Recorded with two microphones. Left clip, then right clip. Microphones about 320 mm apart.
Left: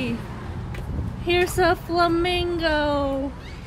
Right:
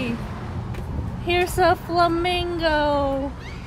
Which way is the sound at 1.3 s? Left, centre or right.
Centre.